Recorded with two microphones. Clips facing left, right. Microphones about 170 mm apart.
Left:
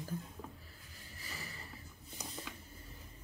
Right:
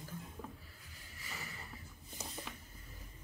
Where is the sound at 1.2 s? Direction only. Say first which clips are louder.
Even; 35° left (ahead or behind).